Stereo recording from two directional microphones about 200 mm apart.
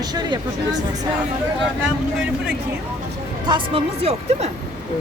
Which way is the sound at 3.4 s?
25° right (ahead or behind).